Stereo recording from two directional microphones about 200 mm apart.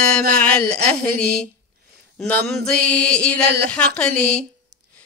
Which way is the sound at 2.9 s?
5° left (ahead or behind).